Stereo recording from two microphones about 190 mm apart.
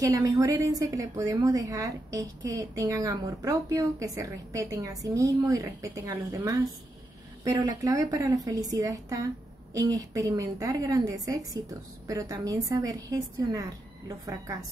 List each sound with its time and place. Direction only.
0.0 s a woman's voice: 15° right (ahead or behind)